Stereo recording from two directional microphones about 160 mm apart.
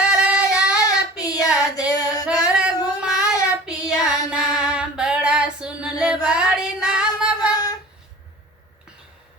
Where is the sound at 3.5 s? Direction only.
5° right (ahead or behind).